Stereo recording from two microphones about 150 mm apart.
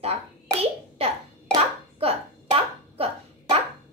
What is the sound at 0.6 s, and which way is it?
Hands, 40° right (ahead or behind).